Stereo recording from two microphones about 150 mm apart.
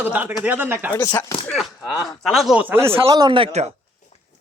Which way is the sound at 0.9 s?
20° left (ahead or behind).